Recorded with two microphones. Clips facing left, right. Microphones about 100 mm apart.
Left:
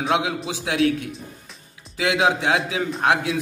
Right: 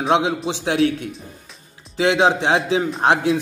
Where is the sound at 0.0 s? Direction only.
35° right (ahead or behind).